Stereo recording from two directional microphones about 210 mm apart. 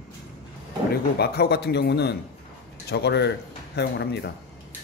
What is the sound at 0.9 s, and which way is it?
Speech, 50° left (ahead or behind).